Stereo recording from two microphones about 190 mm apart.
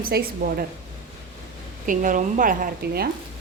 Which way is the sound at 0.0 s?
50° right (ahead or behind).